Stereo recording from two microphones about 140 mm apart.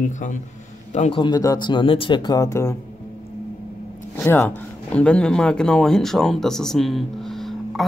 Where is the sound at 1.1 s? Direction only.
30° left (ahead or behind).